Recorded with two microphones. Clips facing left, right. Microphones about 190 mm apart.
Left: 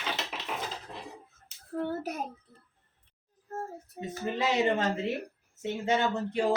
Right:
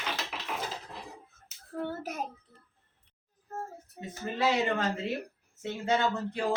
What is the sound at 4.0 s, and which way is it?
Speech, 20° left (ahead or behind).